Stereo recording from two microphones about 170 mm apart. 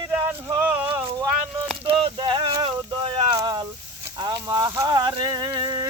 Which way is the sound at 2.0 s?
30° right (ahead or behind).